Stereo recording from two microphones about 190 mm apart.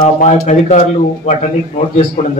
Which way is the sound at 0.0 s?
40° left (ahead or behind).